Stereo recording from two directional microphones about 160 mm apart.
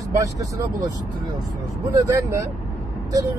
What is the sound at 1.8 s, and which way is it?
Speech, 20° right (ahead or behind).